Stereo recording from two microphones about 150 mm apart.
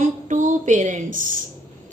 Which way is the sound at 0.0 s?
55° right (ahead or behind).